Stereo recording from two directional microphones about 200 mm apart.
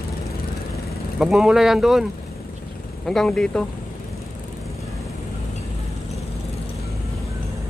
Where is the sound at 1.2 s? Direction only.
Centre (ahead or behind).